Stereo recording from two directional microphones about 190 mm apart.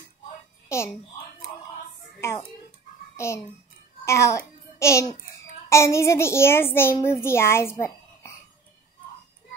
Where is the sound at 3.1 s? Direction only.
15° left (ahead or behind).